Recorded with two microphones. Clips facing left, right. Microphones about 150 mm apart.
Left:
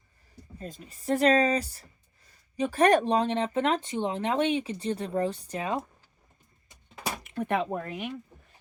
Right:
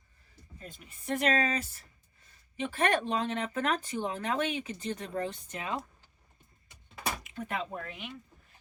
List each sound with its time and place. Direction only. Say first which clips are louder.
0.6 s speech: left 7 dB; 35° left (ahead or behind)
7.3 s speech: left 8 dB; 60° left (ahead or behind)